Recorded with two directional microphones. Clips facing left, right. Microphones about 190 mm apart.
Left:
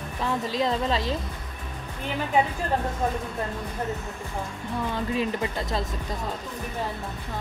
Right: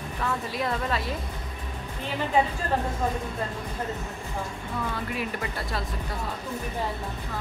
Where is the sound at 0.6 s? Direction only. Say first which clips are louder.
Left 4 dB; 20° left (ahead or behind).